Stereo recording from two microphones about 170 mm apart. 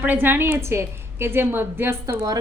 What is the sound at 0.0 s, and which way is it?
A woman's voice, 10° right (ahead or behind).